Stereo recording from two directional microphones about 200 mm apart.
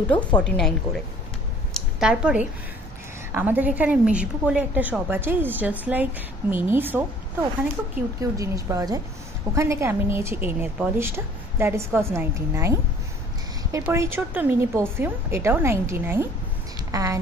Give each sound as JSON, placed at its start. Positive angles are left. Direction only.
{"t": 0.4, "sound": "a woman's voice", "side_deg": 5}
{"t": 1.7, "sound": "a sound", "side_deg": -5}
{"t": 3.3, "sound": "a woman's voice", "side_deg": -10}
{"t": 8.2, "sound": "a woman's voice", "side_deg": -15}